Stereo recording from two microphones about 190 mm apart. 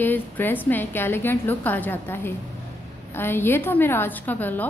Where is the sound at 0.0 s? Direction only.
10° left (ahead or behind).